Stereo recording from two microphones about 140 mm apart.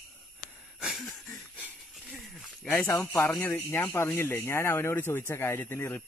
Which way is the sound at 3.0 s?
15° left (ahead or behind).